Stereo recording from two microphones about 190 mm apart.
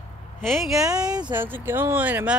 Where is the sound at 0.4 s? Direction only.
Centre (ahead or behind).